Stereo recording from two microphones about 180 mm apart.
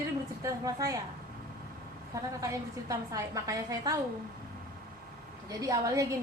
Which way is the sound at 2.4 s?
20° right (ahead or behind).